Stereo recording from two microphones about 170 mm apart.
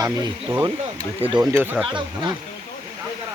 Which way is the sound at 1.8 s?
30° right (ahead or behind).